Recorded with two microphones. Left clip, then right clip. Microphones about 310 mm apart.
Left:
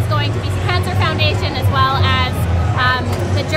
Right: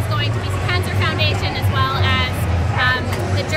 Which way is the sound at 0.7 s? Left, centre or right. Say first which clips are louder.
Left 2 dB; centre.